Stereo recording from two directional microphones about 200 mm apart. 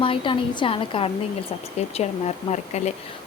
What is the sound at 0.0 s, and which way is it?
A woman's voice, 25° left (ahead or behind).